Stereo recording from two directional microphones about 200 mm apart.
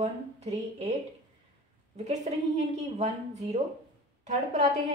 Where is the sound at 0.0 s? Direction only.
35° right (ahead or behind).